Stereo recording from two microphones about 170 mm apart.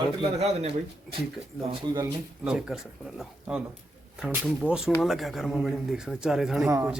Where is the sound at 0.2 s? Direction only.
40° right (ahead or behind).